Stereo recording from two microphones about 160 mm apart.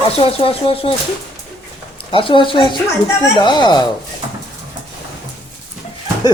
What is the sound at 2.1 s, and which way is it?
Speech, 30° left (ahead or behind).